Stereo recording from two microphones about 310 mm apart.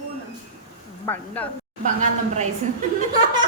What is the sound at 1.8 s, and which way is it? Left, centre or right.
Speech, right.